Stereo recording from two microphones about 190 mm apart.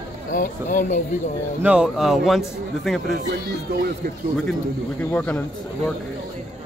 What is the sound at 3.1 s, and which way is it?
Speech, 55° right (ahead or behind).